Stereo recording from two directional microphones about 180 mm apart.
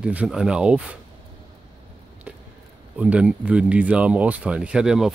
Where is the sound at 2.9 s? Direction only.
5° right (ahead or behind).